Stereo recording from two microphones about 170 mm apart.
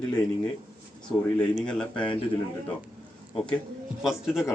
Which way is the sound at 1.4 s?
5° left (ahead or behind).